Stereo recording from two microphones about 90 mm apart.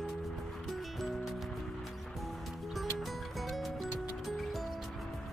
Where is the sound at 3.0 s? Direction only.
Centre (ahead or behind).